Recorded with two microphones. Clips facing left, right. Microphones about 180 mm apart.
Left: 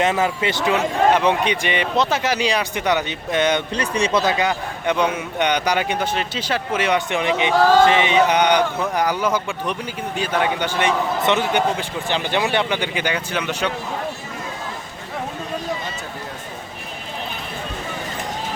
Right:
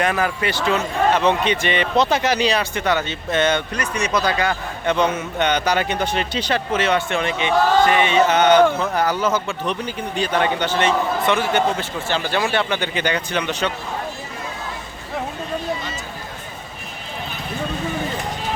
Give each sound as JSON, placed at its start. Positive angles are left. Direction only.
{"t": 0.0, "sound": "speech", "side_deg": 25}
{"t": 3.7, "sound": "speech", "side_deg": 30}